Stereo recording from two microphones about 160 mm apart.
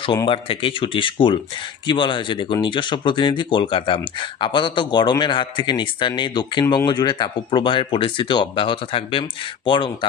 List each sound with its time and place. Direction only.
0.0 s speech: 30° left (ahead or behind)